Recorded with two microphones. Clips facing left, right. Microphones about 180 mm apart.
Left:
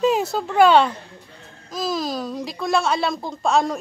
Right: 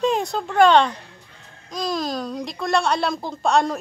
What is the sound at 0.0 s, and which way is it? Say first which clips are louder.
A woman's voice: left 2 dB; 5° left (ahead or behind).